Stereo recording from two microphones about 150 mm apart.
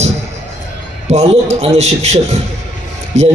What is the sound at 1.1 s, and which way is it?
A man's voice, 45° right (ahead or behind).